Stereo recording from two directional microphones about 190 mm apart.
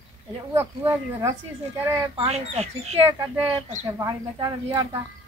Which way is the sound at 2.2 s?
35° right (ahead or behind).